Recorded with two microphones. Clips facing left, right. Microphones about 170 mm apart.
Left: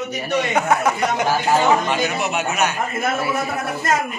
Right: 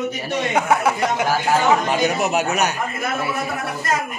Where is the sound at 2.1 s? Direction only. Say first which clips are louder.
Right 2 dB; 40° right (ahead or behind).